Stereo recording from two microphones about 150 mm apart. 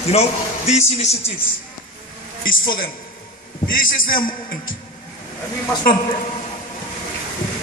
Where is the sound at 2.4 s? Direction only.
70° left (ahead or behind).